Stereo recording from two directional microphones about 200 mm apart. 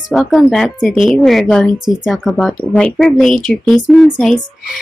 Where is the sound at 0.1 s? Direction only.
Centre (ahead or behind).